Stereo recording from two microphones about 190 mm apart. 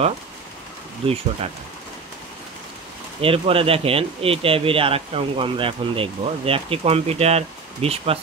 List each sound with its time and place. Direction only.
1.0 s speech: 30° right (ahead or behind)
3.2 s speech: 30° right (ahead or behind)